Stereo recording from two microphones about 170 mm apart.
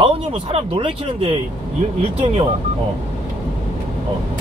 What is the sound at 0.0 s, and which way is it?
Speech, 35° right (ahead or behind).